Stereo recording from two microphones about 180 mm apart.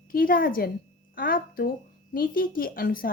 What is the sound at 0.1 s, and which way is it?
A woman's voice, 50° left (ahead or behind).